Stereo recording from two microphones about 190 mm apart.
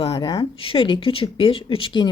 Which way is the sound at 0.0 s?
20° left (ahead or behind).